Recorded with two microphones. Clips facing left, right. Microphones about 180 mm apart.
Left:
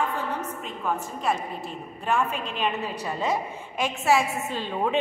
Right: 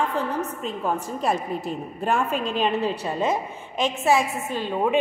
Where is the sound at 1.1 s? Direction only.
40° right (ahead or behind).